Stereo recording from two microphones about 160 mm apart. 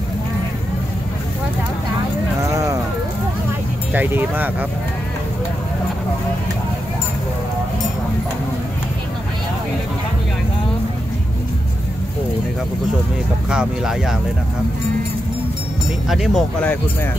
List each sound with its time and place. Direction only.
2.4 s a sound: 20° right (ahead or behind)
3.9 s speech: 10° right (ahead or behind)
13.5 s speech: 5° right (ahead or behind)
16.1 s speech: centre (ahead or behind)